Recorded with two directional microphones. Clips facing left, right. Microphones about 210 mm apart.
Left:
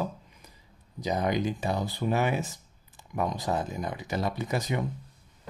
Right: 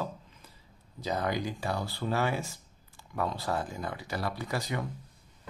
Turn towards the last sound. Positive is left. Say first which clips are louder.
# left 4 dB
turn(degrees=20)  # may be behind; listen again after turning